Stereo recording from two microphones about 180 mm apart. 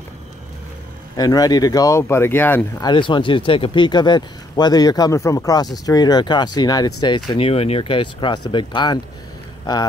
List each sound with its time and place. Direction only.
1.1 s speech: 20° left (ahead or behind)
2.8 s speech: 25° left (ahead or behind)